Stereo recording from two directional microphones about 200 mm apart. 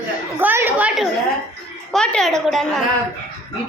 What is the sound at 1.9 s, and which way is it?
Speech, 5° left (ahead or behind).